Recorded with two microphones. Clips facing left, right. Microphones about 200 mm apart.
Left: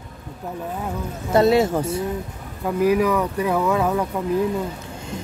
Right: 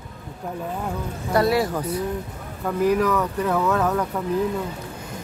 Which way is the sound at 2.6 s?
10° left (ahead or behind).